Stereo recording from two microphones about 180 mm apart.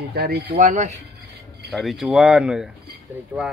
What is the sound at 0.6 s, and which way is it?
Speech, 40° right (ahead or behind).